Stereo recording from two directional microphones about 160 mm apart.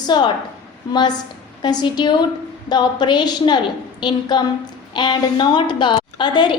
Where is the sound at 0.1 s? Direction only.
25° left (ahead or behind).